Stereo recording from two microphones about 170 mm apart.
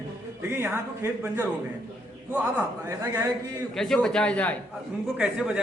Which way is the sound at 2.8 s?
15° right (ahead or behind).